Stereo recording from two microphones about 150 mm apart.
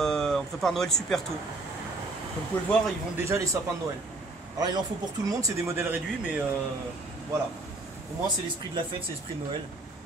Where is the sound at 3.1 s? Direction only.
20° right (ahead or behind).